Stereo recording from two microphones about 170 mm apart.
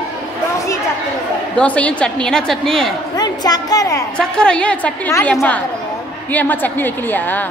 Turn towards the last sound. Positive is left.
turn(degrees=10)  # may be behind; listen again after turning